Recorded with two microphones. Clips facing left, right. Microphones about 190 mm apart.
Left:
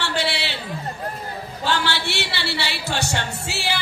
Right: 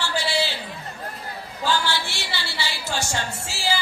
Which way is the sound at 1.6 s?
65° left (ahead or behind).